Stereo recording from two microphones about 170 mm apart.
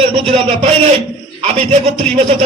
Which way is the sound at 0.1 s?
35° right (ahead or behind).